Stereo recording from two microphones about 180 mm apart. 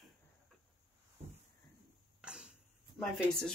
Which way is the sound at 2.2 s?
5° right (ahead or behind).